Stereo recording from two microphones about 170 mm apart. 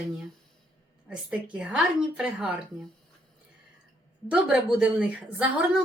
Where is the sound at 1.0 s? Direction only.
5° right (ahead or behind).